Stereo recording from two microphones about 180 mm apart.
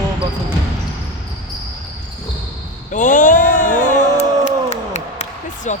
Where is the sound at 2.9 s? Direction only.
45° left (ahead or behind).